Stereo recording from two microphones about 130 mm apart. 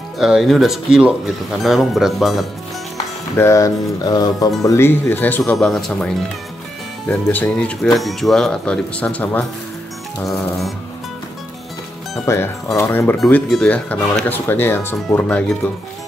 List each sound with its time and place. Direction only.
0.2 s speech: 5° right (ahead or behind)
3.3 s speech: 20° left (ahead or behind)
4.0 s music: 30° left (ahead or behind)
4.6 s speech: 20° left (ahead or behind)
5.5 s speech: 5° left (ahead or behind)
10.2 s speech: centre (ahead or behind)
12.3 s speech: 25° left (ahead or behind)